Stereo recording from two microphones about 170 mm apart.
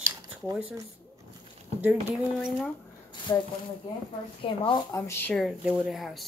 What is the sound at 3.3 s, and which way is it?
Speech, 20° left (ahead or behind).